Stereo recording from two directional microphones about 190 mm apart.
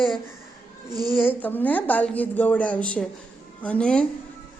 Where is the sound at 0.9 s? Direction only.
20° right (ahead or behind).